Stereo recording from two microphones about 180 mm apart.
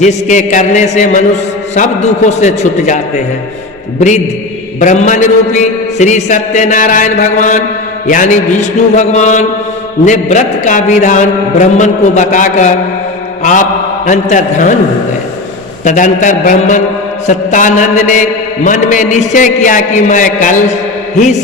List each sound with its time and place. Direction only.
0.0 s a man's voice: 40° left (ahead or behind)
4.8 s mantra: 40° left (ahead or behind)
9.0 s a man's voice: 40° left (ahead or behind)
10.1 s mantra: 40° left (ahead or behind)
15.8 s mantra: 45° left (ahead or behind)